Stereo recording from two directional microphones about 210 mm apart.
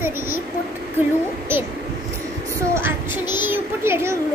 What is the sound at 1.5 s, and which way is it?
Speech, 10° right (ahead or behind).